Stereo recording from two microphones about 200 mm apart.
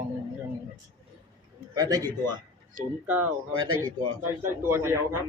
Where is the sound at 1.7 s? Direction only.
20° right (ahead or behind).